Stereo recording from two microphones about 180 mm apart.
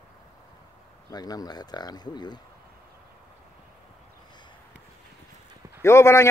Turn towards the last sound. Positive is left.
turn(degrees=15)  # may be behind; listen again after turning